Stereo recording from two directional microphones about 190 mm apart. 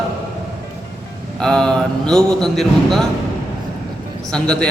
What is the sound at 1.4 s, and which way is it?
A man's voice, 5° left (ahead or behind).